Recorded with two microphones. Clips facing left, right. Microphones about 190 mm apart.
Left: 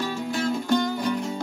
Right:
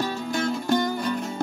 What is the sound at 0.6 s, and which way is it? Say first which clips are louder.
Music: even; 45° right (ahead or behind).